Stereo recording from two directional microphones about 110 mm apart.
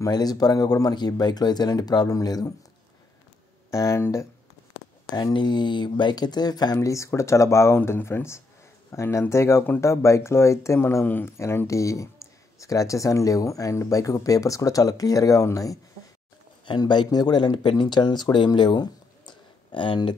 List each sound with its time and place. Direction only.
0.0 s speech: 35° left (ahead or behind)
3.7 s speech: 25° left (ahead or behind)
5.1 s speech: 40° left (ahead or behind)
16.6 s speech: 45° left (ahead or behind)